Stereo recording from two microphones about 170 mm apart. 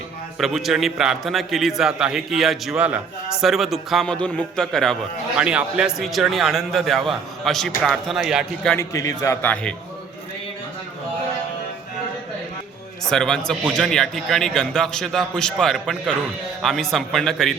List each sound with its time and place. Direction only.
0.3 s a man's voice: centre (ahead or behind)
8.7 s a man's voice: 20° left (ahead or behind)
13.1 s a man's voice: 5° left (ahead or behind)